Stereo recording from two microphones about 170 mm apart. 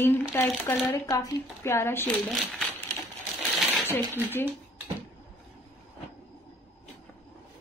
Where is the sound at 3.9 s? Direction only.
10° left (ahead or behind).